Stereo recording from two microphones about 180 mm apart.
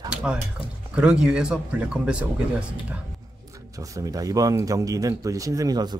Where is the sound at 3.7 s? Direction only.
20° right (ahead or behind).